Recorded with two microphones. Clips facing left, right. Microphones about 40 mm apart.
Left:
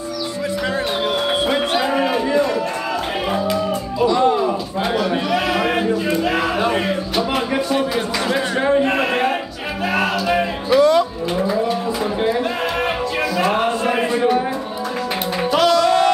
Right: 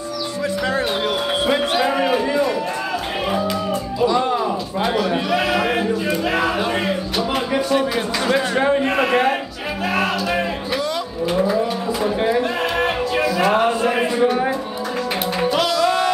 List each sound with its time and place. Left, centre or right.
1.4 s music: centre
4.5 s a sound: centre
9.9 s music: centre
10.8 s music: left
11.3 s cattle: centre
15.4 s music: centre